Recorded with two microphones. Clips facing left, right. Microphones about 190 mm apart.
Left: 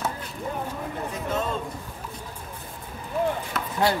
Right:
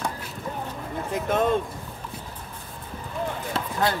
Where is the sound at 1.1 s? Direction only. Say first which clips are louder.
Right 7 dB; 55° right (ahead or behind).